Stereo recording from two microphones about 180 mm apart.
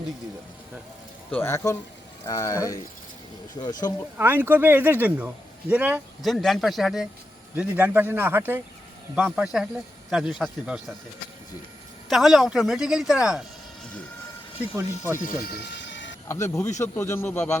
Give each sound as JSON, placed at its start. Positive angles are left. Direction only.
{"t": 1.3, "sound": "speech", "side_deg": 15}
{"t": 4.2, "sound": "a woman's voice", "side_deg": -10}
{"t": 12.0, "sound": "a woman's voice", "side_deg": 0}
{"t": 14.8, "sound": "speech", "side_deg": -15}
{"t": 15.4, "sound": "a sound", "side_deg": 85}
{"t": 16.3, "sound": "speech", "side_deg": 15}